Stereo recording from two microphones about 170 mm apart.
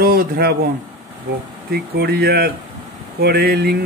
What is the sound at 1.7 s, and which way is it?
Speech, 70° right (ahead or behind).